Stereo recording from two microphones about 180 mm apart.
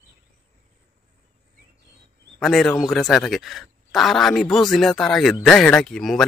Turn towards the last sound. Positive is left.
turn(degrees=0)  # may be behind; listen again after turning